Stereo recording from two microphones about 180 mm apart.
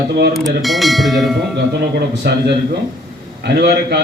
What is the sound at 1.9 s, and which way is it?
A man's voice, 70° right (ahead or behind).